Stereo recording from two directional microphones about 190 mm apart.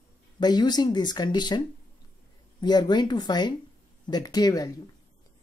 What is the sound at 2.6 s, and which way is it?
Speech, 20° left (ahead or behind).